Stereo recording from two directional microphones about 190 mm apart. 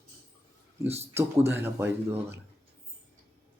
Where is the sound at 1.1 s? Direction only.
10° right (ahead or behind).